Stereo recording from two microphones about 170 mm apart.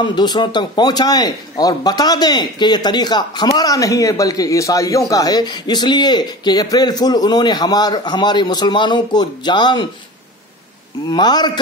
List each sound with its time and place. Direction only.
0.0 s a man's voice: 25° left (ahead or behind)
11.1 s a man's voice: 25° left (ahead or behind)